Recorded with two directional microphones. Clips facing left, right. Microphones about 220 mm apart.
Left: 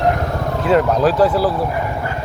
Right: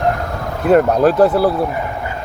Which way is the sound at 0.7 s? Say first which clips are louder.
Right 3 dB; 55° right (ahead or behind).